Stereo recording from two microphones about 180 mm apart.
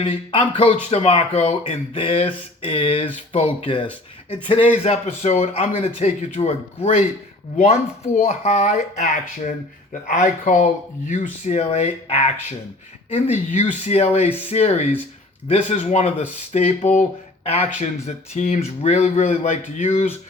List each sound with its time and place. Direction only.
0.0 s speech: 30° left (ahead or behind)
4.8 s speech: 40° left (ahead or behind)